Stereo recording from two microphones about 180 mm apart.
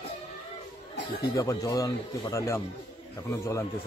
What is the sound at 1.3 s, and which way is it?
Speech, 20° left (ahead or behind).